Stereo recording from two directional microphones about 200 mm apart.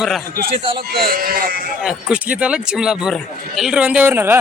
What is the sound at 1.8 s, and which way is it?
A man's voice, 5° right (ahead or behind).